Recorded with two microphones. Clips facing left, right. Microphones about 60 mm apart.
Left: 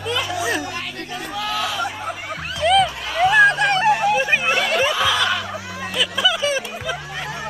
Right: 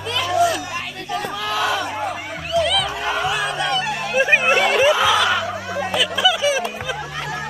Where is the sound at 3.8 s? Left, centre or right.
Left.